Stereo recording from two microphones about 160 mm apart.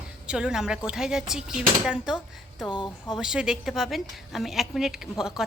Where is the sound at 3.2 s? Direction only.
5° right (ahead or behind).